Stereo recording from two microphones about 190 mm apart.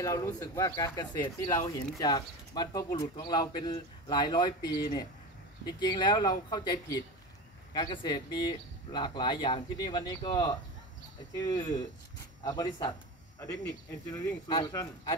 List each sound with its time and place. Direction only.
0.0 s speech: 15° left (ahead or behind)
14.1 s speech: 20° left (ahead or behind)